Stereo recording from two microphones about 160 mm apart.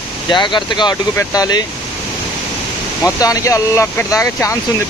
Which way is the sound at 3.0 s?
20° left (ahead or behind).